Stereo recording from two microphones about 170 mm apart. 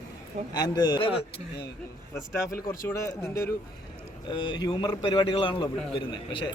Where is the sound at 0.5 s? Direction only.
25° left (ahead or behind).